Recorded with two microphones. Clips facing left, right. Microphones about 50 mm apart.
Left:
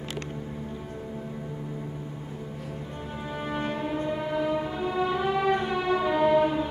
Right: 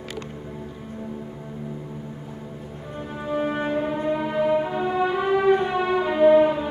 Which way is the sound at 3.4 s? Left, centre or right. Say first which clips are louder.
Right 3 dB; right.